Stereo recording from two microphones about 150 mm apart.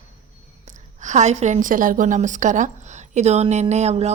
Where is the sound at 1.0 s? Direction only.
55° right (ahead or behind).